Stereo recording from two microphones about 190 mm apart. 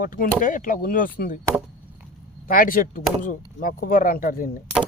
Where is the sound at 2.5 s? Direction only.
45° left (ahead or behind).